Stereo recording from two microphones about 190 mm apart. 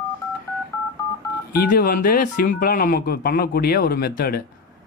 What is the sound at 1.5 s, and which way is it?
Speech, 55° left (ahead or behind).